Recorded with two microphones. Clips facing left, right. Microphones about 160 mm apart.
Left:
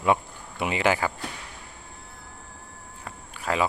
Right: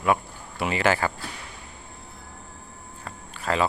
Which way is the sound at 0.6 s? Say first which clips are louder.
Right 1 dB; 15° left (ahead or behind).